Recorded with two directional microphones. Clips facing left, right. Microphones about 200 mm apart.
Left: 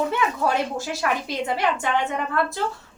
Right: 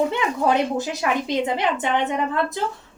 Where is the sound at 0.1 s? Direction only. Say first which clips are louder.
Right 2 dB; 20° right (ahead or behind).